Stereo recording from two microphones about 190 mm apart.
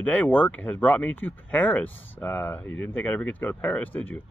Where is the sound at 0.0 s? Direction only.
10° left (ahead or behind).